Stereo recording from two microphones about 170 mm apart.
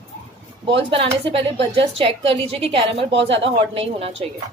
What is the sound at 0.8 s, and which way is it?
Speech, 30° right (ahead or behind).